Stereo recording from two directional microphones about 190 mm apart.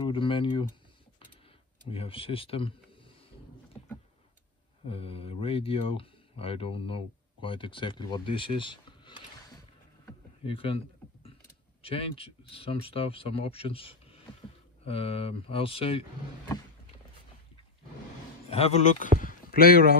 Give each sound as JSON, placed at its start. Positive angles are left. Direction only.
{"t": 0.1, "sound": "speech", "side_deg": 25}
{"t": 1.9, "sound": "speech", "side_deg": 30}
{"t": 4.8, "sound": "speech", "side_deg": 30}
{"t": 10.4, "sound": "speech", "side_deg": 30}
{"t": 11.8, "sound": "speech", "side_deg": 30}
{"t": 18.5, "sound": "a man's voice", "side_deg": 35}
{"t": 19.1, "sound": "speech", "side_deg": 50}